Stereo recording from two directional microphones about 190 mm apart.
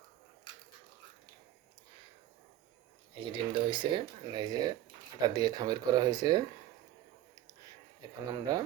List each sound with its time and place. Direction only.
3.2 s speech: 25° right (ahead or behind)
8.3 s speech: 20° right (ahead or behind)